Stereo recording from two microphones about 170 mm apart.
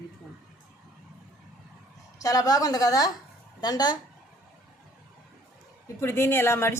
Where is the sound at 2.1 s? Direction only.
20° left (ahead or behind).